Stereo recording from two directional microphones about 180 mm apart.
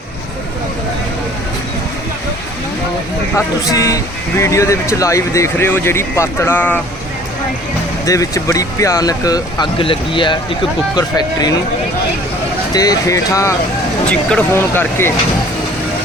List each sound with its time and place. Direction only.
3.3 s speech: 20° left (ahead or behind)
8.0 s speech: 20° left (ahead or behind)
12.7 s speech: 20° left (ahead or behind)